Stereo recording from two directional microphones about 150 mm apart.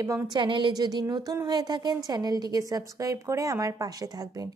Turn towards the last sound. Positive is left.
turn(degrees=-25)  # may be behind; listen again after turning